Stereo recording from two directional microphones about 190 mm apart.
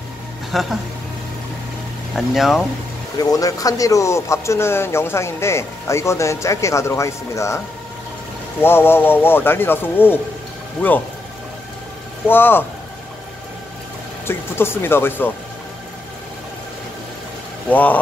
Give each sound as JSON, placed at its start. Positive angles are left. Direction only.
{"t": 0.5, "sound": "speech", "side_deg": 0}
{"t": 2.1, "sound": "speech", "side_deg": 0}
{"t": 3.2, "sound": "speech", "side_deg": 20}
{"t": 12.3, "sound": "speech", "side_deg": 10}
{"t": 14.2, "sound": "speech", "side_deg": 10}
{"t": 17.6, "sound": "speech", "side_deg": 10}